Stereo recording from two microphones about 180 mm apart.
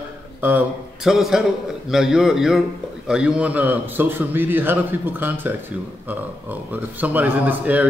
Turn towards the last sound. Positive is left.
turn(degrees=-10)  # may be behind; listen again after turning